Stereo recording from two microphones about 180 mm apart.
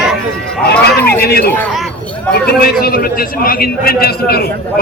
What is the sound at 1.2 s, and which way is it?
Speech, 60° left (ahead or behind).